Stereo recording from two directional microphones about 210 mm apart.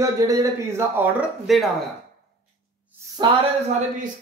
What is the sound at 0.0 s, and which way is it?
Speech, 15° right (ahead or behind).